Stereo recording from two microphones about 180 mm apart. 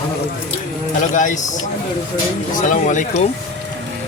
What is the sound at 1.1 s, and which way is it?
Speech, 45° left (ahead or behind).